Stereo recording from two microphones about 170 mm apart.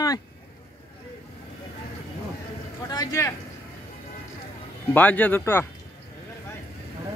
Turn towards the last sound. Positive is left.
turn(degrees=10)  # may be behind; listen again after turning